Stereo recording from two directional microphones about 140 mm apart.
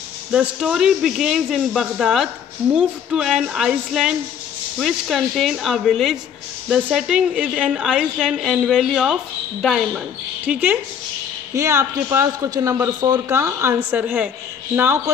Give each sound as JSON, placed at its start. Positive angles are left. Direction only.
{"t": 0.3, "sound": "a woman's voice", "side_deg": -5}